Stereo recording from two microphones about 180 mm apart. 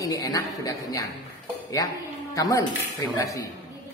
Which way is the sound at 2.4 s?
20° left (ahead or behind).